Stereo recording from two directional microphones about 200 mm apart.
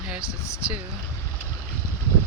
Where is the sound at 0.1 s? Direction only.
5° right (ahead or behind).